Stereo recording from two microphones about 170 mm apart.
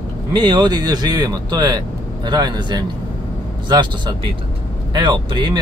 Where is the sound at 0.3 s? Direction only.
25° right (ahead or behind).